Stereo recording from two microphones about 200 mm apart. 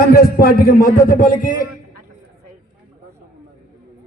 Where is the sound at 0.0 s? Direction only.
50° left (ahead or behind).